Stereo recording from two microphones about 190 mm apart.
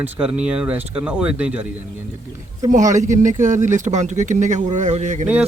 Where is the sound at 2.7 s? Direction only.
40° right (ahead or behind).